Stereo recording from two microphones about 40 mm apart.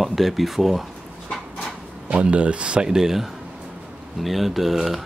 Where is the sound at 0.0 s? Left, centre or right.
Centre.